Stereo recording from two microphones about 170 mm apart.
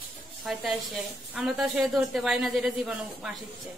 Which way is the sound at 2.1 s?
Centre (ahead or behind).